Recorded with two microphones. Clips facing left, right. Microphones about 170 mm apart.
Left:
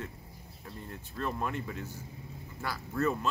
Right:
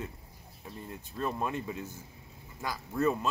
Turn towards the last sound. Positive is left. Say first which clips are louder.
# right 2 dB
turn(degrees=-10)  # may be behind; listen again after turning